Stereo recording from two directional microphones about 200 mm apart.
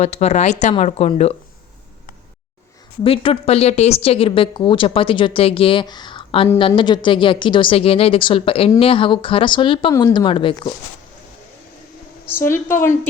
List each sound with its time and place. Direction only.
0.0 s speech: 35° left (ahead or behind)
3.0 s speech: 30° left (ahead or behind)
12.3 s a woman's voice: 10° left (ahead or behind)